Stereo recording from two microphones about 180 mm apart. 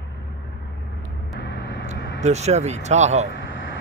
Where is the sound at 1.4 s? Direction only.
70° left (ahead or behind).